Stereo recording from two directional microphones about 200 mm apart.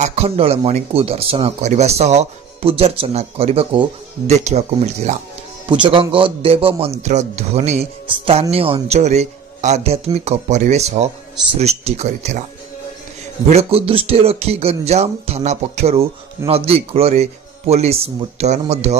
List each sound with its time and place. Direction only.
0.0 s a man's voice: 30° right (ahead or behind)
13.5 s speech: 30° right (ahead or behind)